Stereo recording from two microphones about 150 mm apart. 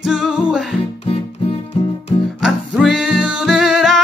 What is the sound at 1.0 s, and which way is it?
Music, 40° left (ahead or behind).